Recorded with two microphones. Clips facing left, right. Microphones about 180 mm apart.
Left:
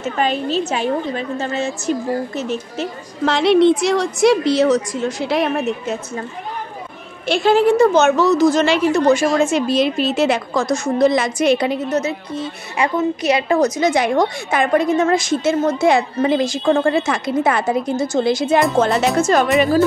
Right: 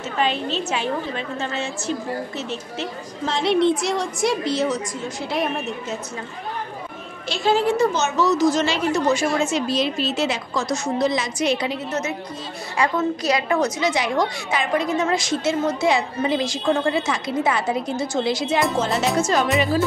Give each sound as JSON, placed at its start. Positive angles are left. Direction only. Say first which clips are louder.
{"t": 0.2, "sound": "a woman's voice", "louder": "left 4 dB", "side_deg": 40}
{"t": 3.3, "sound": "a woman's voice", "louder": "left 6 dB", "side_deg": 75}
{"t": 7.2, "sound": "a woman's voice", "louder": "left 6 dB", "side_deg": 60}
{"t": 11.9, "sound": "a woman's voice", "louder": "left 6 dB", "side_deg": 30}
{"t": 12.7, "sound": "a woman's voice", "louder": "left 3 dB", "side_deg": 20}
{"t": 13.7, "sound": "a woman's voice", "louder": "left 5 dB", "side_deg": 50}